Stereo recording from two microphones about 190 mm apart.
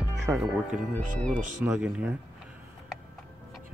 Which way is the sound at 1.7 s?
5° right (ahead or behind).